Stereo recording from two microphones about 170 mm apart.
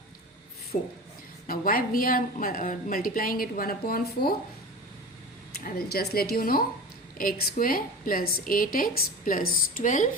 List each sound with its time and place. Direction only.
0.7 s speech: 40° left (ahead or behind)
1.5 s a woman's voice: 55° left (ahead or behind)
5.6 s a woman's voice: 65° left (ahead or behind); by 10.1 s 50° left (ahead or behind)